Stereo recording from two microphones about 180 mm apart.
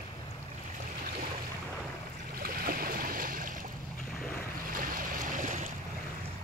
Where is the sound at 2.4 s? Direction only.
55° right (ahead or behind).